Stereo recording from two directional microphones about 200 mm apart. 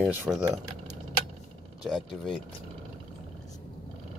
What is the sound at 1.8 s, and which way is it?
Speech, centre (ahead or behind).